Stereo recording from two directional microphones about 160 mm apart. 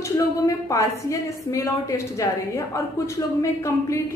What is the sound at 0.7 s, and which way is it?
A woman's voice, 20° left (ahead or behind).